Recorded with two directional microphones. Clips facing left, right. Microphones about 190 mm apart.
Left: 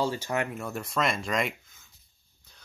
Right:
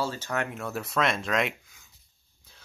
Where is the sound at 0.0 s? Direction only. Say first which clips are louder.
Left 2 dB; 15° left (ahead or behind).